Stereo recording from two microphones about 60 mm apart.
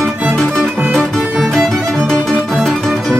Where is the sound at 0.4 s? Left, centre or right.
Centre.